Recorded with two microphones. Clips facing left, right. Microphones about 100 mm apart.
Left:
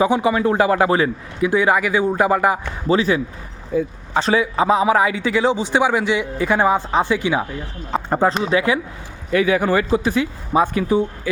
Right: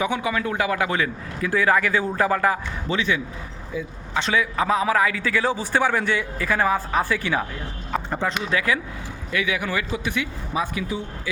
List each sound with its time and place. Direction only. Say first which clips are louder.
0.0 s speech: left 7 dB; 30° left (ahead or behind)
1.4 s speech: left 4 dB; 20° left (ahead or behind)
2.8 s a man's voice: left 8 dB; 35° left (ahead or behind); by 7.4 s 20° left (ahead or behind)
8.1 s speech: left 9 dB; 40° left (ahead or behind)
9.3 s speech: left 9 dB; 40° left (ahead or behind)